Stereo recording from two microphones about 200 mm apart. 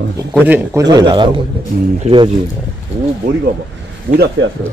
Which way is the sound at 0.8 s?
20° right (ahead or behind).